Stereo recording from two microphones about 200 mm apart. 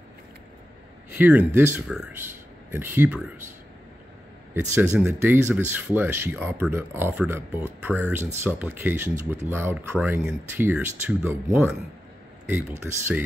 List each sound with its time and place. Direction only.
1.1 s speech: 10° right (ahead or behind)
4.6 s speech: 10° right (ahead or behind)